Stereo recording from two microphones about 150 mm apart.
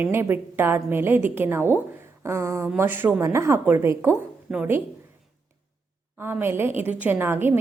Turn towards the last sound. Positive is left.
turn(degrees=-15)  # may be behind; listen again after turning